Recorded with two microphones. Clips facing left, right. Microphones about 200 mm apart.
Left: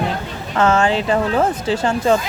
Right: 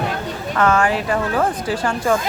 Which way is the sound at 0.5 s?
25° left (ahead or behind).